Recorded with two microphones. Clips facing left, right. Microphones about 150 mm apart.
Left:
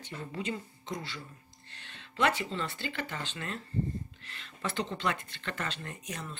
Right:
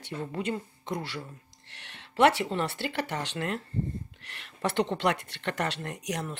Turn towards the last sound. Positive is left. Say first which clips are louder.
# right 7 dB
turn(degrees=-75)  # may be behind; listen again after turning